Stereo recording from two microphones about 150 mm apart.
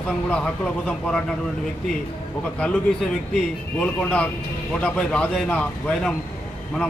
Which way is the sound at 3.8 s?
5° left (ahead or behind).